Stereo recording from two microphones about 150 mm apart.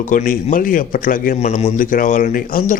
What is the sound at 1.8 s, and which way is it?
Speech, 65° left (ahead or behind).